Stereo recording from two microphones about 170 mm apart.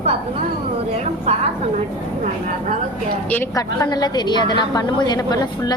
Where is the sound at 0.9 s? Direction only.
40° right (ahead or behind).